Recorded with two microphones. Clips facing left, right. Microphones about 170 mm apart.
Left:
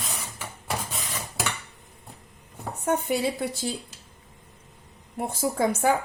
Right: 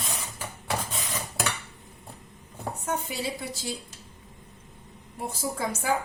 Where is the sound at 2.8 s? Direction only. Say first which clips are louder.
Left 8 dB; 60° left (ahead or behind).